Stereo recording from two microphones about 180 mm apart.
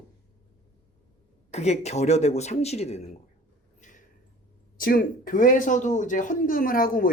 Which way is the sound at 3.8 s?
45° left (ahead or behind).